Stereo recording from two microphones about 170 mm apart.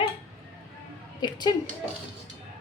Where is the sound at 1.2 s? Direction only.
25° left (ahead or behind).